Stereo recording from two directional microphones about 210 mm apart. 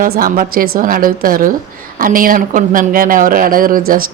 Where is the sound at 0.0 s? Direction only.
40° right (ahead or behind).